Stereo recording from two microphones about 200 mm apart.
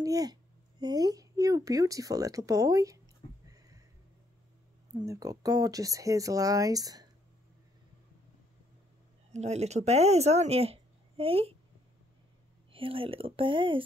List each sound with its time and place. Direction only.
0.0 s a woman's voice: 20° right (ahead or behind)
3.4 s a sound: 15° right (ahead or behind)
4.9 s speech: 15° right (ahead or behind)
9.3 s speech: 35° right (ahead or behind)
12.7 s speech: 25° right (ahead or behind)